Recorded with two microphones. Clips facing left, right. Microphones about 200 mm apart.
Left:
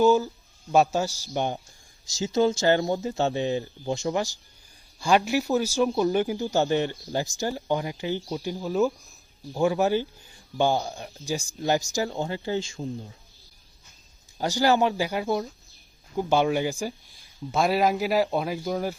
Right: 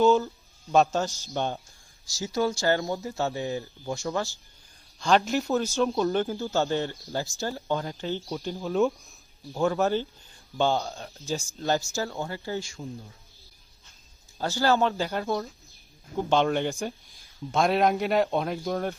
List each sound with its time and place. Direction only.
0.0 s speech: 5° left (ahead or behind)
8.6 s speech: centre (ahead or behind)
9.6 s speech: 15° left (ahead or behind)
14.3 s speech: 15° left (ahead or behind)